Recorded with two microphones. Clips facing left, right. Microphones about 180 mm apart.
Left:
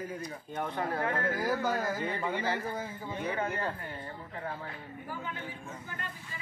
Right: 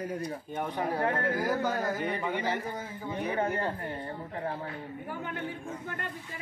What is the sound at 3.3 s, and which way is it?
A man's voice, 35° right (ahead or behind).